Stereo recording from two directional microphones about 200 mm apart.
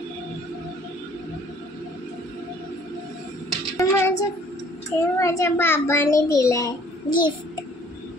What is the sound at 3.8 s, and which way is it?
Child singing, 15° left (ahead or behind).